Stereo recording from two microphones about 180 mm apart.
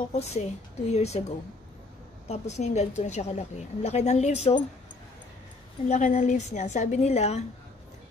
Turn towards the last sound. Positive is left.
turn(degrees=40)  # may be behind; listen again after turning